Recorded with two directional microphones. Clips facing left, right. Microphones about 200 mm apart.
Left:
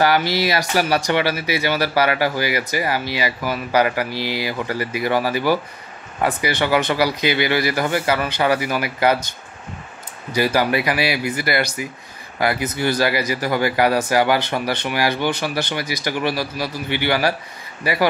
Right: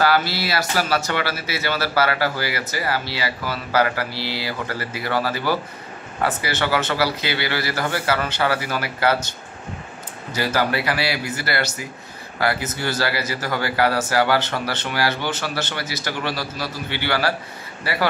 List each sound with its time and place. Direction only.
0.0 s speech: 15° left (ahead or behind)
10.3 s speech: 15° left (ahead or behind)